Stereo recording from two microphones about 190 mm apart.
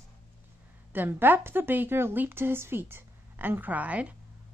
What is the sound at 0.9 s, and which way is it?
A woman's voice, 10° right (ahead or behind).